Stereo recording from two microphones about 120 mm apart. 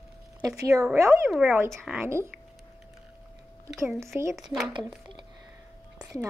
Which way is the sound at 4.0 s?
25° right (ahead or behind).